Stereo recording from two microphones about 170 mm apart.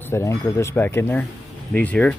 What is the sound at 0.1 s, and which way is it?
Speech, 15° left (ahead or behind).